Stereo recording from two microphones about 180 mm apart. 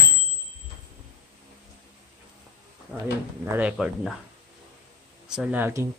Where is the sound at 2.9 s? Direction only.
5° left (ahead or behind).